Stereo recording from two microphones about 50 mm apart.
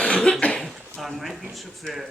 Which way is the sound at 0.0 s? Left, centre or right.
Centre.